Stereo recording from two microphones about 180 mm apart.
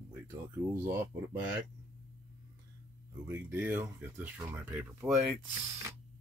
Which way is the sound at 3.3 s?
10° right (ahead or behind).